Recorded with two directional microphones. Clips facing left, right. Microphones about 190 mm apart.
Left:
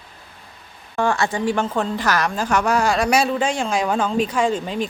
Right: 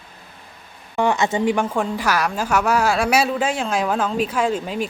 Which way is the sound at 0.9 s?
20° right (ahead or behind).